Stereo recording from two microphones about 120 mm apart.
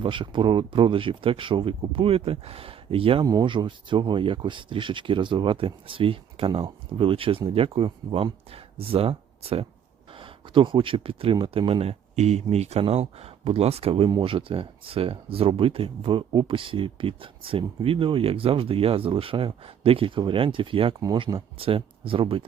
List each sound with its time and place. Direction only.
0.0 s speech: 45° right (ahead or behind)
3.2 s speech: 35° right (ahead or behind); by 14.1 s 55° right (ahead or behind)
14.1 s speech: 45° right (ahead or behind)
21.0 s speech: 35° right (ahead or behind)